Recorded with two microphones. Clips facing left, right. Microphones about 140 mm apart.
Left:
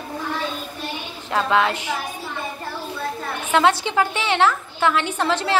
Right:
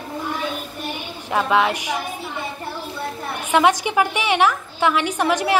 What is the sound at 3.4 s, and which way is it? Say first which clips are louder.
A woman's voice: right 1 dB; 15° right (ahead or behind).